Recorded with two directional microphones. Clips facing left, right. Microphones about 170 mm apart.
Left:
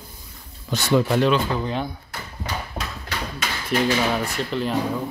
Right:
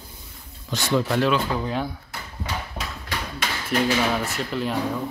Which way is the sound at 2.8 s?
30° left (ahead or behind).